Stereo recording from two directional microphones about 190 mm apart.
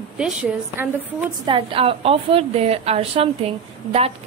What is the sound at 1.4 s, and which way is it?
A woman's voice, 25° right (ahead or behind).